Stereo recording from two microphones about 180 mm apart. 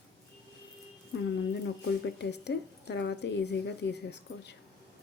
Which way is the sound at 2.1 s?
70° left (ahead or behind).